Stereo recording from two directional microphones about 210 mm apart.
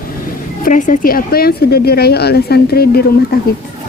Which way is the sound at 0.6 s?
40° left (ahead or behind).